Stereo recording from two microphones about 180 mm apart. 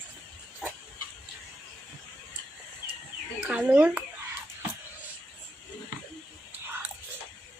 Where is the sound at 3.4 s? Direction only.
5° right (ahead or behind).